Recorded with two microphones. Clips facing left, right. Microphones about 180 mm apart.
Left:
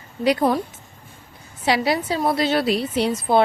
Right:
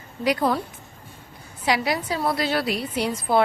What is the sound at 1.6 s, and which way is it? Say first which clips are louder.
A woman's voice: left 3 dB; 30° left (ahead or behind).